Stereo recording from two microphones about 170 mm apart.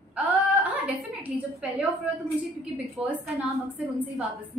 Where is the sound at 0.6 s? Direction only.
10° right (ahead or behind).